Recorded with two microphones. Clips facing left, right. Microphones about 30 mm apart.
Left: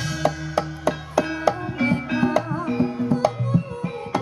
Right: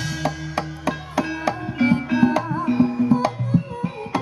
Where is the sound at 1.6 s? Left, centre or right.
Centre.